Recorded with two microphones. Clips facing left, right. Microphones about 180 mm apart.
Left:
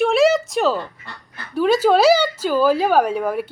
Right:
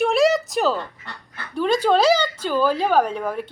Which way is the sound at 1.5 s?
5° left (ahead or behind).